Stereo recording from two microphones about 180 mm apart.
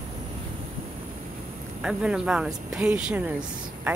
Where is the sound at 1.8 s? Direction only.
5° right (ahead or behind).